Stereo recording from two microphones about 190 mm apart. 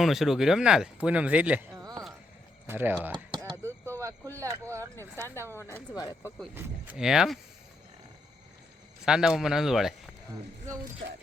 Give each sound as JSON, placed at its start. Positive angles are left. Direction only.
{"t": 0.0, "sound": "speech", "side_deg": 0}
{"t": 3.3, "sound": "a sound", "side_deg": -20}
{"t": 4.0, "sound": "speech", "side_deg": -15}
{"t": 4.9, "sound": "speech", "side_deg": 15}
{"t": 6.4, "sound": "speech", "side_deg": -10}
{"t": 9.0, "sound": "speech", "side_deg": -5}